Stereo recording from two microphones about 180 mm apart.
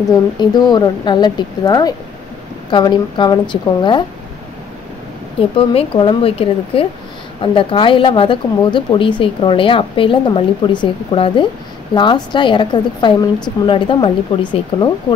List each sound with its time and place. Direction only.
0.4 s speech: 25° left (ahead or behind)
5.6 s a woman's voice: 30° left (ahead or behind)